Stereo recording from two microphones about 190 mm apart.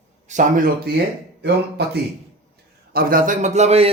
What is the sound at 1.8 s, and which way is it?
A man's voice, 60° right (ahead or behind).